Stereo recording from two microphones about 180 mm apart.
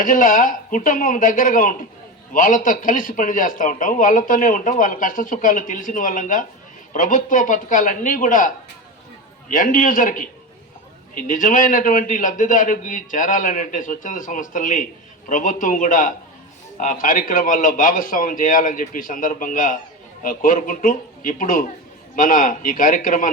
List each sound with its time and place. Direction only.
0.0 s a man's voice: 50° left (ahead or behind)
9.5 s a man's voice: 50° left (ahead or behind)